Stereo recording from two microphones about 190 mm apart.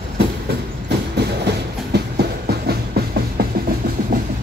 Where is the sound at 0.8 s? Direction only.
60° right (ahead or behind).